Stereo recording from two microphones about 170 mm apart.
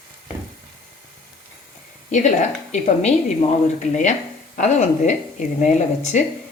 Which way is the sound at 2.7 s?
40° left (ahead or behind).